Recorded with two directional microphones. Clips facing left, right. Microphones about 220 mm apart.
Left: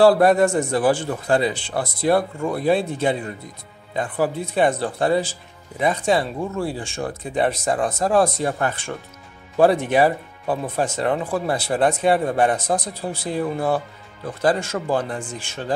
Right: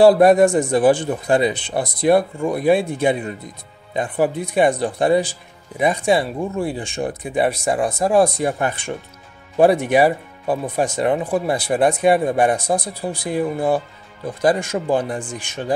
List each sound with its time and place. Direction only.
0.0 s speech: 15° right (ahead or behind)